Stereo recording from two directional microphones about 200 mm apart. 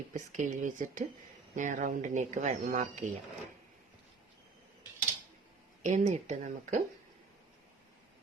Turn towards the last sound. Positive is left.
turn(degrees=-35)  # may be behind; listen again after turning